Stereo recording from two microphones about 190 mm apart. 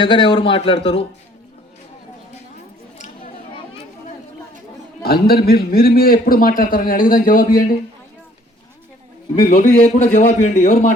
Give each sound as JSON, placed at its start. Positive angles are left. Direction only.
{"t": 0.0, "sound": "a man's voice", "side_deg": 25}
{"t": 5.0, "sound": "a man's voice", "side_deg": 55}
{"t": 9.4, "sound": "a man's voice", "side_deg": 40}